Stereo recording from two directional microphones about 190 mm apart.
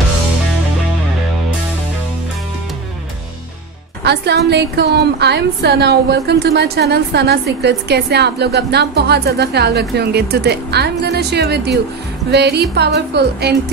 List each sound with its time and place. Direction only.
4.0 s a woman's voice: 60° right (ahead or behind)